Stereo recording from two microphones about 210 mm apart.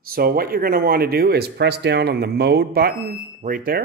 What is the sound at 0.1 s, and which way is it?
Speech, 45° right (ahead or behind).